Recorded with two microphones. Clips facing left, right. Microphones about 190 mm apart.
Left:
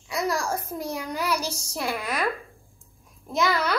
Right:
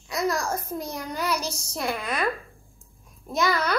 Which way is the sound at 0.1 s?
10° left (ahead or behind).